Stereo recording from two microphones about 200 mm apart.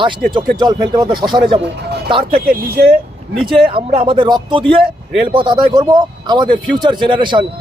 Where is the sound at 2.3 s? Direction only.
50° right (ahead or behind).